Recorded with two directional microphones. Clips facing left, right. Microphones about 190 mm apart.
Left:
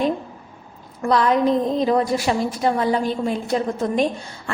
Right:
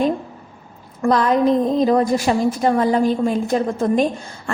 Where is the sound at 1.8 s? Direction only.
45° right (ahead or behind).